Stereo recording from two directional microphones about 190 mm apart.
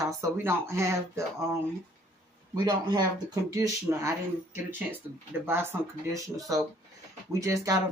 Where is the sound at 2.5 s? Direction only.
20° right (ahead or behind).